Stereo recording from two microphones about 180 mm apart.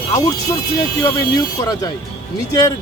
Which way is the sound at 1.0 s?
20° left (ahead or behind).